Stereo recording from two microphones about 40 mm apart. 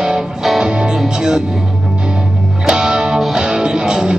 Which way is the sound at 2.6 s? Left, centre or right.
Centre.